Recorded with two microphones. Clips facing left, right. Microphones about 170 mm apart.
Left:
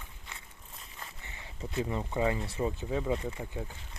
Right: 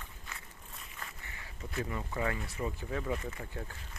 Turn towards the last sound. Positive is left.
turn(degrees=15)  # may be behind; listen again after turning